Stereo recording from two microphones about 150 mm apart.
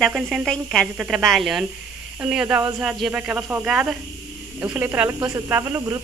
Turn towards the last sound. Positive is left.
turn(degrees=-20)  # may be behind; listen again after turning